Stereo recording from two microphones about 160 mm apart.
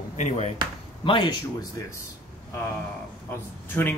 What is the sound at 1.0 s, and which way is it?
Speech, 30° left (ahead or behind).